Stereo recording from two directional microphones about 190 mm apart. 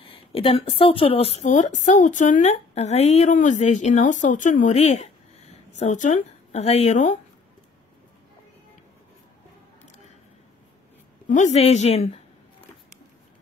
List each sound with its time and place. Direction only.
0.0 s a woman's voice: 30° left (ahead or behind)
11.2 s a woman's voice: 40° left (ahead or behind)